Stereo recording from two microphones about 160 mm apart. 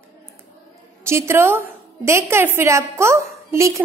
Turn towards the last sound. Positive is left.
turn(degrees=-20)  # may be behind; listen again after turning